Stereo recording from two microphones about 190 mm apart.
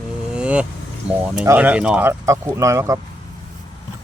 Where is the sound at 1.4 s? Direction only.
10° right (ahead or behind).